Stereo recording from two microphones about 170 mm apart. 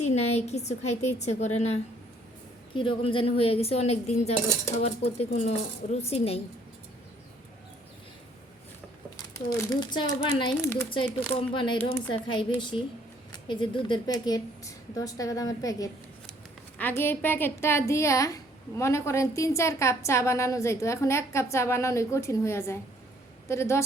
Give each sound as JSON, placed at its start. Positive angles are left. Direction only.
{"t": 0.0, "sound": "a woman's voice", "side_deg": 40}
{"t": 2.7, "sound": "a woman's voice", "side_deg": 30}
{"t": 9.1, "sound": "a child's voice", "side_deg": 20}
{"t": 13.3, "sound": "a woman's voice", "side_deg": 30}